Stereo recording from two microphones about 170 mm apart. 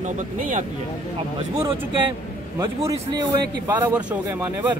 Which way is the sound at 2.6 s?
20° right (ahead or behind).